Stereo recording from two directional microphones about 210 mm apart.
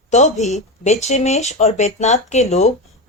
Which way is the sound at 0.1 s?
30° left (ahead or behind).